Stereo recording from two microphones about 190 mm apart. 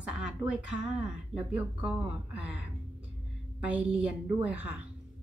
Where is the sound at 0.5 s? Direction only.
5° right (ahead or behind).